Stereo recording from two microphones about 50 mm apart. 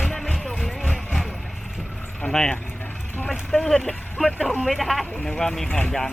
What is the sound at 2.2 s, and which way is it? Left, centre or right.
Speech, centre.